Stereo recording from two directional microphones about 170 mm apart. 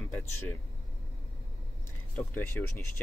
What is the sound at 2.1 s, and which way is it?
Speech, 10° left (ahead or behind).